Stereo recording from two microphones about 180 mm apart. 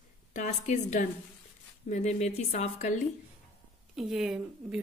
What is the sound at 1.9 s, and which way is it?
Speech, 40° left (ahead or behind).